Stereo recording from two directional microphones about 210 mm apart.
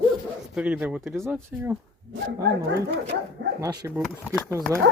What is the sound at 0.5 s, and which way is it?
Speech, 5° right (ahead or behind).